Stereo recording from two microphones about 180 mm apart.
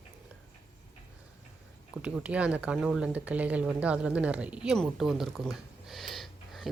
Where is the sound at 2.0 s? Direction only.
5° right (ahead or behind).